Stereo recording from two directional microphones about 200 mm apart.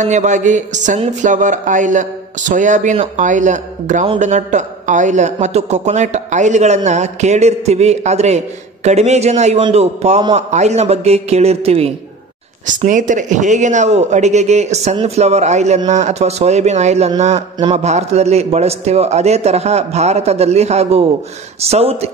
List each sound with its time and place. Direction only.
0.0 s a man's voice: 35° right (ahead or behind)